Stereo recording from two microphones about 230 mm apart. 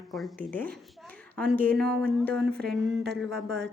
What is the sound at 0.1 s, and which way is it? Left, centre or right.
A woman's voice, centre.